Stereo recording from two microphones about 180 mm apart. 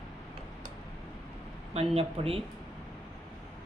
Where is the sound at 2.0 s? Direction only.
30° right (ahead or behind).